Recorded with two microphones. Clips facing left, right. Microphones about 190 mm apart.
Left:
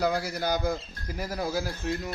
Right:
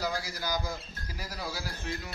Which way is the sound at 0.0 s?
60° left (ahead or behind).